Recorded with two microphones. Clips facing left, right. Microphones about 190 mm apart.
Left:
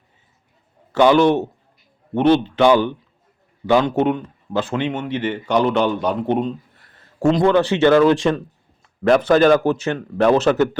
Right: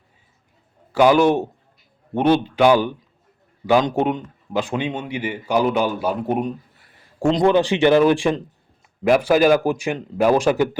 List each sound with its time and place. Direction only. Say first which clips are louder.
0.9 s a man's voice: left 1 dB; 10° right (ahead or behind)